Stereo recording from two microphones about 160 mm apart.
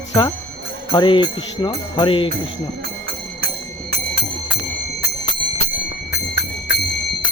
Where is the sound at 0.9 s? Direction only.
30° left (ahead or behind).